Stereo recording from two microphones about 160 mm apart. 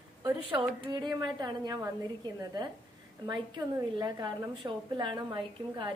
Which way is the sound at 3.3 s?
25° right (ahead or behind).